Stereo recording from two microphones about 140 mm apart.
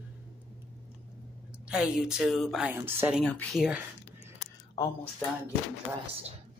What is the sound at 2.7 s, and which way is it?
Speech, 15° right (ahead or behind).